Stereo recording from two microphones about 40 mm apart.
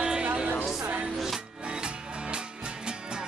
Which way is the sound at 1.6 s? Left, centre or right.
Right.